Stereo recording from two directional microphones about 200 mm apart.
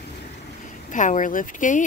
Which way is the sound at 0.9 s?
40° left (ahead or behind).